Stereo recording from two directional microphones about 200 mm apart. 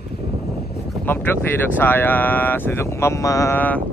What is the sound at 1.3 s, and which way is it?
Speech, 10° left (ahead or behind).